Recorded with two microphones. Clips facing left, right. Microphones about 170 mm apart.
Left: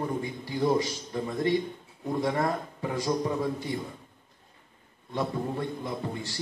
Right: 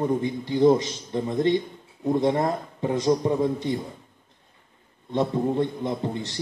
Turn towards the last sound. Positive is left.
turn(degrees=-20)  # may be behind; listen again after turning